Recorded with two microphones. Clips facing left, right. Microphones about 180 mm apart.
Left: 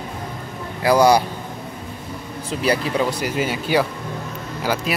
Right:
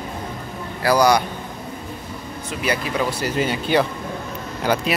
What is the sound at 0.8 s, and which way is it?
Speech, 25° left (ahead or behind).